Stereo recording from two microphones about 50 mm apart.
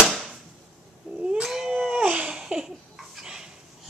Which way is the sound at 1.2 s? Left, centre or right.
Centre.